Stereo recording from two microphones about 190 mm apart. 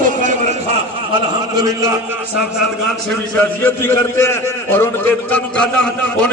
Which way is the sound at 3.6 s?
15° left (ahead or behind).